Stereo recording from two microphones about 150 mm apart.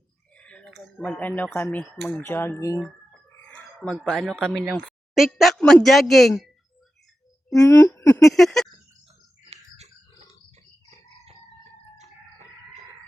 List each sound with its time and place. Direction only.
0.3 s speech: 10° left (ahead or behind)
3.4 s a sound: 10° left (ahead or behind)
3.9 s speech: centre (ahead or behind)
7.6 s speech: 15° left (ahead or behind)
8.3 s speech: centre (ahead or behind)
9.4 s a sound: 45° right (ahead or behind)